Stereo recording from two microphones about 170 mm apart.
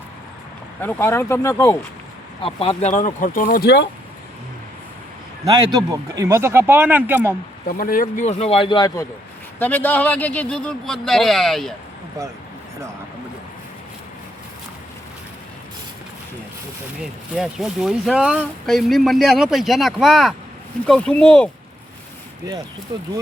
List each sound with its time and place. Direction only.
0.8 s speech: 10° left (ahead or behind)
2.4 s speech: 35° left (ahead or behind); by 3.6 s 55° left (ahead or behind)
5.5 s speech: 20° right (ahead or behind)
7.7 s speech: 55° left (ahead or behind); by 9.0 s 25° left (ahead or behind)
9.6 s speech: 10° left (ahead or behind)
17.0 s speech: 5° right (ahead or behind)
22.9 s speech: 25° right (ahead or behind)